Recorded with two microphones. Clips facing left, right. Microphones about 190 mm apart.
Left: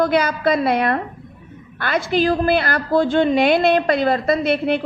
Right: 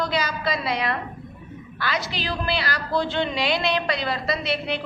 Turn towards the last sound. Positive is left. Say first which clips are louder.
# left 8 dB
turn(degrees=50)  # may be behind; listen again after turning